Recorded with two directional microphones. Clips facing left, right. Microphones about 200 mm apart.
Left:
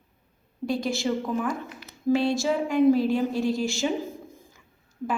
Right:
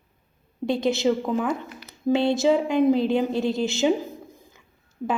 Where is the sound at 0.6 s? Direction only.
25° right (ahead or behind).